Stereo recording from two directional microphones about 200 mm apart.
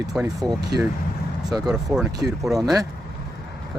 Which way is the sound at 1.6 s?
5° right (ahead or behind).